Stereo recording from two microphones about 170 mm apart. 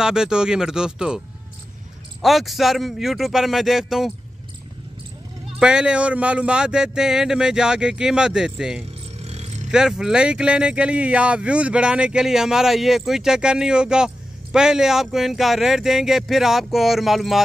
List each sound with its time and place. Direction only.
0.0 s speech: 5° right (ahead or behind)
2.2 s speech: centre (ahead or behind)
5.6 s speech: 5° right (ahead or behind)
9.2 s vehicle: 40° right (ahead or behind)
9.7 s speech: 5° right (ahead or behind)